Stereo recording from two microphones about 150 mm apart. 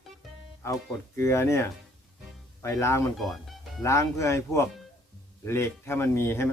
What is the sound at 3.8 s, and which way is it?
Speech, 20° left (ahead or behind).